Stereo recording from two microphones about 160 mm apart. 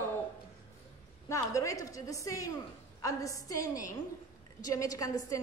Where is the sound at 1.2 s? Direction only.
20° left (ahead or behind).